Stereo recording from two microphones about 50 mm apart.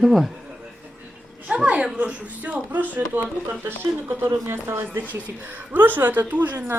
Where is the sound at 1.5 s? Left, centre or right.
Right.